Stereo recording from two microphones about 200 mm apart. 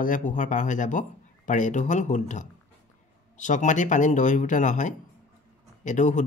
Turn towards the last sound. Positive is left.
turn(degrees=35)  # may be behind; listen again after turning